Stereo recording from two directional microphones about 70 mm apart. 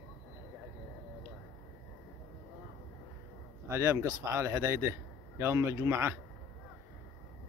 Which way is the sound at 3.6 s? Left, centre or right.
Right.